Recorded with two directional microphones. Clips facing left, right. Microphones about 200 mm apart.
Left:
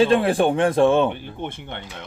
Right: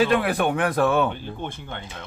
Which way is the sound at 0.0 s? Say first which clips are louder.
Left 4 dB; 30° left (ahead or behind).